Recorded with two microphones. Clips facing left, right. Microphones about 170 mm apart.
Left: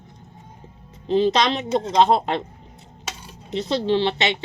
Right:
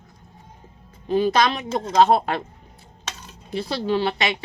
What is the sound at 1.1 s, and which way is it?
Speech, 25° left (ahead or behind).